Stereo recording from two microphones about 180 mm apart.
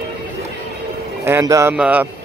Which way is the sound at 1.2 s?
15° right (ahead or behind).